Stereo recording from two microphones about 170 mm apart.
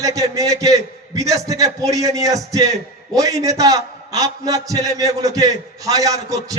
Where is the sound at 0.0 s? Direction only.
20° right (ahead or behind).